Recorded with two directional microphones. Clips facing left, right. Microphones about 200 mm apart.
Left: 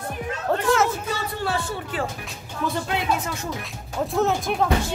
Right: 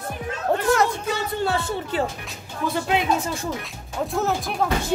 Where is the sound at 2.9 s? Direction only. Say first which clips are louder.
Right 3 dB; 25° right (ahead or behind).